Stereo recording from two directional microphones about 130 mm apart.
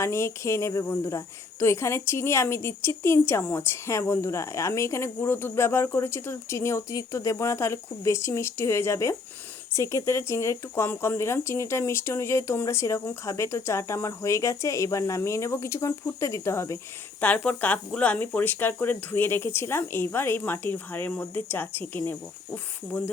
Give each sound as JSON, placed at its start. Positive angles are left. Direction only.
{"t": 0.0, "sound": "speech", "side_deg": 20}
{"t": 17.2, "sound": "speech", "side_deg": 10}